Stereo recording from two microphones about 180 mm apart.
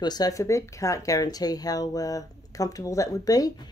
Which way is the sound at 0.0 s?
20° left (ahead or behind).